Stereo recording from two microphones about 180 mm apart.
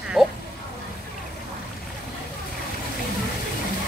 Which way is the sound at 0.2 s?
Centre (ahead or behind).